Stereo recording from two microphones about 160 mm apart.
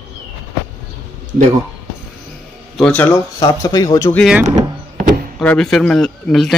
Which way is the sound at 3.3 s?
25° left (ahead or behind).